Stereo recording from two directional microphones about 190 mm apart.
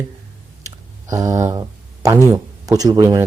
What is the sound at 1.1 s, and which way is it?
Speech, 15° right (ahead or behind).